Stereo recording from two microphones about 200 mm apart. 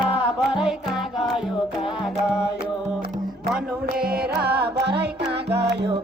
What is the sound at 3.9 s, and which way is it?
Music, 50° right (ahead or behind).